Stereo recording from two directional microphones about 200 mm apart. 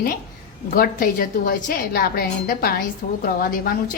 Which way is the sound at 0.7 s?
45° left (ahead or behind).